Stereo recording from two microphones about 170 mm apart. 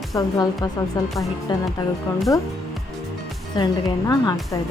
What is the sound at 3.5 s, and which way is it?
A woman's voice, 25° left (ahead or behind).